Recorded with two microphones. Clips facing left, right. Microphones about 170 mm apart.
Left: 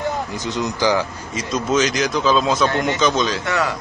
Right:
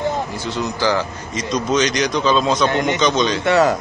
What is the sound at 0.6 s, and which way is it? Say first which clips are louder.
Speech: left 1 dB; 15° left (ahead or behind).